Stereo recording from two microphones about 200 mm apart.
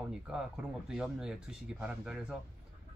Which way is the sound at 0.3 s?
5° right (ahead or behind).